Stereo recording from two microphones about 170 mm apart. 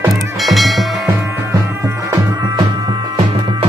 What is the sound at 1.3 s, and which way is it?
Music, 15° right (ahead or behind).